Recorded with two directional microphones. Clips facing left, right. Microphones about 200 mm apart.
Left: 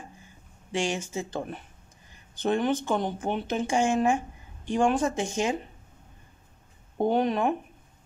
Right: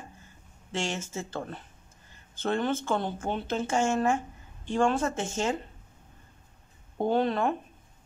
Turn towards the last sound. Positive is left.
turn(degrees=15)  # may be behind; listen again after turning